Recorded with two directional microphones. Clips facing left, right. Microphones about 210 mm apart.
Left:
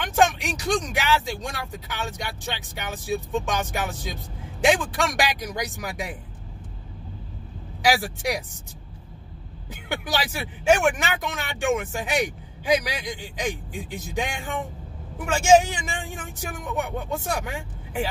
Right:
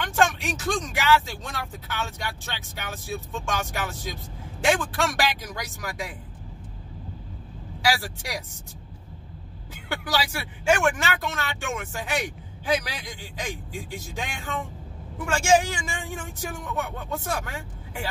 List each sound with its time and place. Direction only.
0.0 s speech: 20° left (ahead or behind)
7.8 s speech: 20° left (ahead or behind)
9.8 s speech: 20° left (ahead or behind)